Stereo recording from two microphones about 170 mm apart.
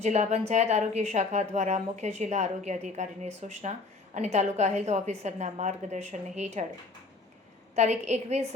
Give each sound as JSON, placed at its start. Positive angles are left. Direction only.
{"t": 0.0, "sound": "a woman's voice", "side_deg": -45}
{"t": 7.8, "sound": "a woman's voice", "side_deg": -40}